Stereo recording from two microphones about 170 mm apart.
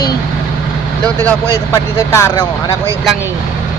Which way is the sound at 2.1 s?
15° left (ahead or behind).